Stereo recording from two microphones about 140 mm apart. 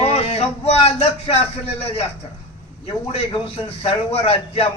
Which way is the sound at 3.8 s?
45° left (ahead or behind).